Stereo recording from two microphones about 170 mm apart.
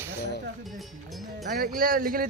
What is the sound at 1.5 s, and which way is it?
Speech, 60° right (ahead or behind).